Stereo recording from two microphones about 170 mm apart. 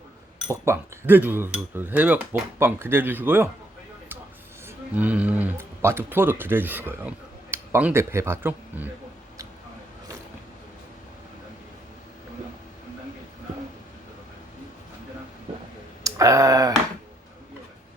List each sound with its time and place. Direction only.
0.5 s speech: 15° right (ahead or behind)
4.6 s speech: 10° right (ahead or behind)
16.0 s speech: 20° right (ahead or behind)